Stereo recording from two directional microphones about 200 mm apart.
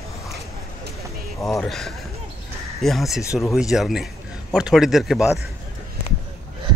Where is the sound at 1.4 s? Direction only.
15° left (ahead or behind).